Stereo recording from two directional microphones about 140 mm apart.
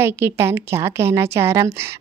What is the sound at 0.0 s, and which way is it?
A woman's voice, 15° right (ahead or behind).